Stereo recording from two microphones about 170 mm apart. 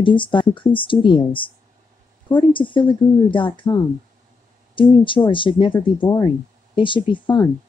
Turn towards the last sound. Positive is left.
turn(degrees=30)  # may be behind; listen again after turning